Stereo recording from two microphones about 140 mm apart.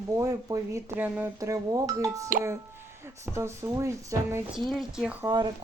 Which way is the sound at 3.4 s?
20° right (ahead or behind).